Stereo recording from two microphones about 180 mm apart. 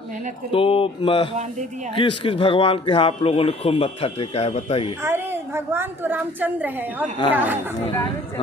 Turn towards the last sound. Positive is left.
turn(degrees=-10)  # may be behind; listen again after turning